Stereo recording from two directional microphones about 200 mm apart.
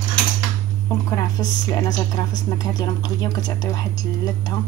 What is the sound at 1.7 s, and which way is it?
A woman's voice, 20° left (ahead or behind).